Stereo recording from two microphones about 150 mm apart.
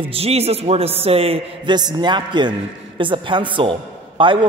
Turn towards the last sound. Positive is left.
turn(degrees=-35)  # may be behind; listen again after turning